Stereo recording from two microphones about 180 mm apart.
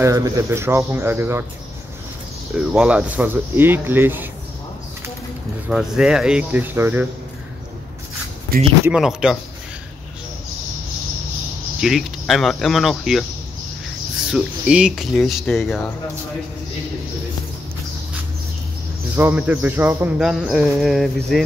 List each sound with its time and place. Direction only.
0.0 s speech: 20° right (ahead or behind)
2.5 s speech: 5° right (ahead or behind)
5.7 s speech: 5° right (ahead or behind)
8.5 s speech: 55° right (ahead or behind)
8.9 s speech: 5° right (ahead or behind)
11.8 s speech: centre (ahead or behind)
14.3 s speech: 5° right (ahead or behind)
19.1 s speech: 10° right (ahead or behind)